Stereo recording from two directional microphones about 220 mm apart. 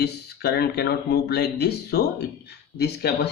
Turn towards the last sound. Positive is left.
turn(degrees=45)  # may be behind; listen again after turning